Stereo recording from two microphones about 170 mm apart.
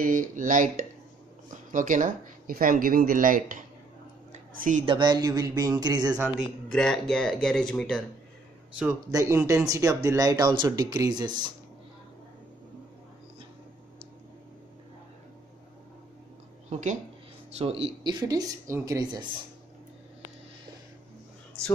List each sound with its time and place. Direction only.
0.0 s speech: 50° right (ahead or behind)
4.3 s a sound: 45° right (ahead or behind)
4.8 s speech: 25° right (ahead or behind)
6.1 s speech: 10° right (ahead or behind)
6.7 s speech: 5° left (ahead or behind)
9.1 s speech: 15° right (ahead or behind)
16.6 s speech: 45° right (ahead or behind)
18.3 s speech: 20° right (ahead or behind)